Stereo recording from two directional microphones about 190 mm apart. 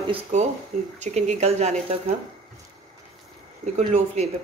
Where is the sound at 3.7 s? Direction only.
35° right (ahead or behind).